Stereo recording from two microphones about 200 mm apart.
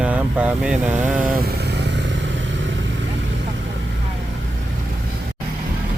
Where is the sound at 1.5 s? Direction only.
55° right (ahead or behind).